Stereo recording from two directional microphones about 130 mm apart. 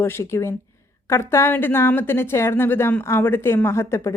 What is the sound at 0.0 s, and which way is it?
Speech, 20° left (ahead or behind).